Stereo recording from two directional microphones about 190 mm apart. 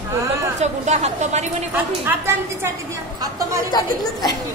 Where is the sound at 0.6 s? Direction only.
35° right (ahead or behind).